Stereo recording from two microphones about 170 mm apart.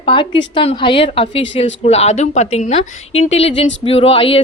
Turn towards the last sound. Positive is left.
turn(degrees=35)  # may be behind; listen again after turning